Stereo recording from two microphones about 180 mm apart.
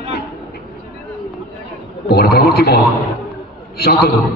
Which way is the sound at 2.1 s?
60° left (ahead or behind).